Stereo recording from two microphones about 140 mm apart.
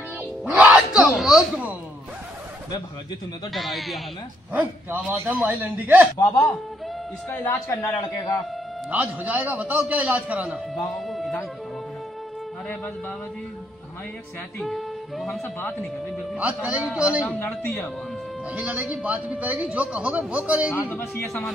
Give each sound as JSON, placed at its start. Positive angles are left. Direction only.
{"t": 0.5, "sound": "a sound", "side_deg": -10}
{"t": 1.1, "sound": "speech", "side_deg": 0}
{"t": 3.5, "sound": "speech", "side_deg": 0}
{"t": 4.5, "sound": "a man's voice", "side_deg": -10}
{"t": 7.2, "sound": "a man's voice", "side_deg": 20}
{"t": 8.9, "sound": "a man's voice", "side_deg": -10}
{"t": 10.7, "sound": "music", "side_deg": 0}
{"t": 14.6, "sound": "speech", "side_deg": 0}
{"t": 16.3, "sound": "a man's voice", "side_deg": -10}
{"t": 18.5, "sound": "a man's voice", "side_deg": -10}
{"t": 20.7, "sound": "speech", "side_deg": 20}